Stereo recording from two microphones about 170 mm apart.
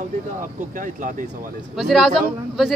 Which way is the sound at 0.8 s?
50° right (ahead or behind).